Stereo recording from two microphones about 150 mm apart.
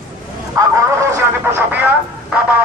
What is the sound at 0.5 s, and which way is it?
Speech, 20° right (ahead or behind).